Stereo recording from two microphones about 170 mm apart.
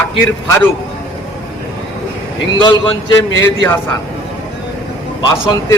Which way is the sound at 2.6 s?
25° left (ahead or behind).